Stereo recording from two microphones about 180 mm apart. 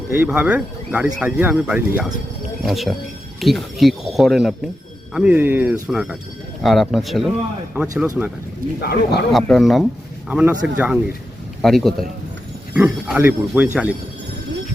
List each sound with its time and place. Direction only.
0.3 s speech: 5° right (ahead or behind)
8.8 s speech: 60° left (ahead or behind)
9.3 s speech: centre (ahead or behind)